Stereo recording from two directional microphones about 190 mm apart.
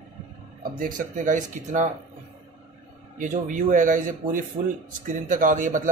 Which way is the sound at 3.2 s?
40° right (ahead or behind).